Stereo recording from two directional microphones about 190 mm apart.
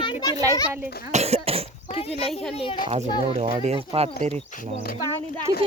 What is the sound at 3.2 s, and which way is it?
Speech, 35° right (ahead or behind).